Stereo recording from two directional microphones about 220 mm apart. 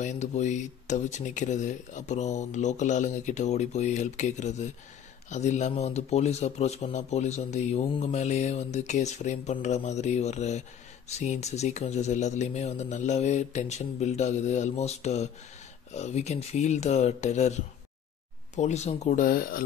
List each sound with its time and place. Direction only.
0.0 s speech: 30° left (ahead or behind)